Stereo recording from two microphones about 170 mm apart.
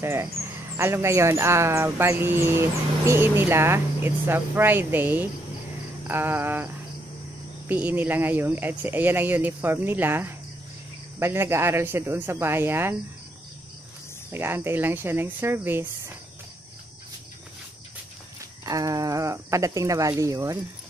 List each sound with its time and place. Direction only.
0.0 s speech: 15° right (ahead or behind)
14.3 s speech: 15° right (ahead or behind)
18.7 s speech: 20° right (ahead or behind)